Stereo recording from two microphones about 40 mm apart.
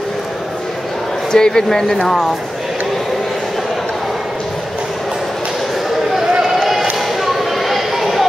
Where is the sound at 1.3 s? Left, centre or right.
Centre.